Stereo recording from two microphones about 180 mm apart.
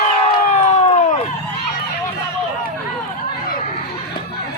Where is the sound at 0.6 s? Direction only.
40° left (ahead or behind).